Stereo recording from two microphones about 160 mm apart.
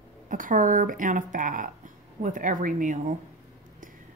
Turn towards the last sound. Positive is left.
turn(degrees=-55)  # may be behind; listen again after turning